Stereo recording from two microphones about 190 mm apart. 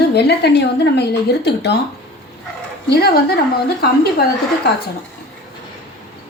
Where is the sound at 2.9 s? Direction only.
55° left (ahead or behind).